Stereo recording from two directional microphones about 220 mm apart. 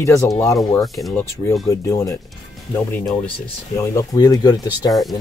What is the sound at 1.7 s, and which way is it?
Speech, 15° left (ahead or behind).